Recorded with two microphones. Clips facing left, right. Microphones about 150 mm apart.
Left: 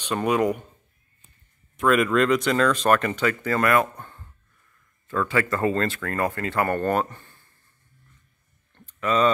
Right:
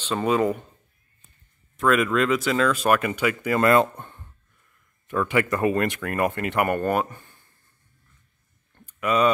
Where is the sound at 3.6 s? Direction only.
25° right (ahead or behind).